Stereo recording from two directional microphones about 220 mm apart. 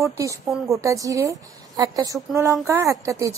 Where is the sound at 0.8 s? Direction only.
15° right (ahead or behind).